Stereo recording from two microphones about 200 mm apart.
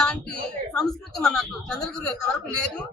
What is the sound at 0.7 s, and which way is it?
Speech, 5° left (ahead or behind).